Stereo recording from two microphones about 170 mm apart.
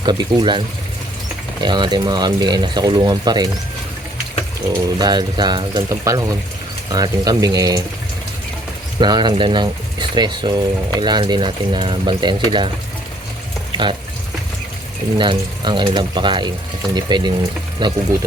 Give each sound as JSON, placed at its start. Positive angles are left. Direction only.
{"t": 0.0, "sound": "speech", "side_deg": -25}
{"t": 1.6, "sound": "speech", "side_deg": -25}
{"t": 4.7, "sound": "speech", "side_deg": -20}
{"t": 9.0, "sound": "speech", "side_deg": -25}
{"t": 15.2, "sound": "speech", "side_deg": -25}